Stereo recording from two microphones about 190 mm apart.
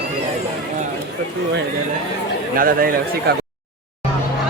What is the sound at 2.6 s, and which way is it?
Speech, 50° right (ahead or behind).